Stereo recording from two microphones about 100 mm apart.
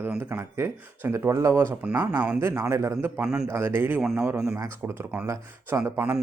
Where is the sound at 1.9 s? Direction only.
40° right (ahead or behind).